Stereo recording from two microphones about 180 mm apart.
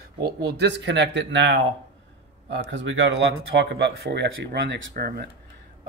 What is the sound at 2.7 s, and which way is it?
Speech, 90° right.